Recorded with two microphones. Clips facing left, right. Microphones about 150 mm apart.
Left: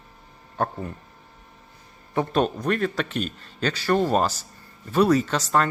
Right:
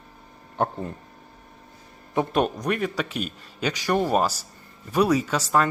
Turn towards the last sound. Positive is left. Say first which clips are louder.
# even
turn(degrees=-10)  # may be behind; listen again after turning